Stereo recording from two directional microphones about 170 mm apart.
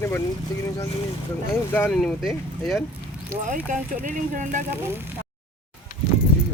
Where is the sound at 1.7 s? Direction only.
10° left (ahead or behind).